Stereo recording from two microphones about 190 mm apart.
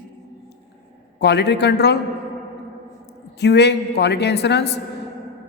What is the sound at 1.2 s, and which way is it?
Speech, 60° left (ahead or behind).